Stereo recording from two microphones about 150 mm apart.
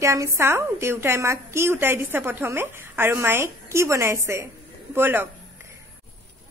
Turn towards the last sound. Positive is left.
turn(degrees=-15)  # may be behind; listen again after turning